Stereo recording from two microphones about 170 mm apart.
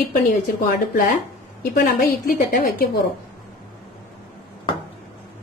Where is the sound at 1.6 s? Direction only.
60° left (ahead or behind).